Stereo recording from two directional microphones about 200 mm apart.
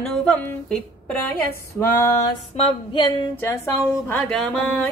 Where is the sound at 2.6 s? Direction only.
30° left (ahead or behind).